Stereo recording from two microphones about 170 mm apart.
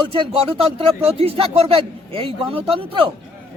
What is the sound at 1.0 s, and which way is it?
A man's voice, 35° right (ahead or behind).